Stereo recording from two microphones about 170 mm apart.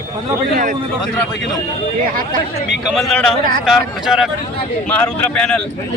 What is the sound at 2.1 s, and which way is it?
Speech, 55° right (ahead or behind).